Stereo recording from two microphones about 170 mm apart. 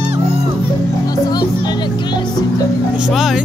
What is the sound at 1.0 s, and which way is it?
Music, 25° left (ahead or behind).